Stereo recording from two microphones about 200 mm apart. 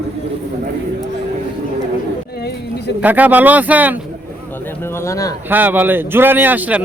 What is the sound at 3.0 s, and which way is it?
Speech, 10° right (ahead or behind).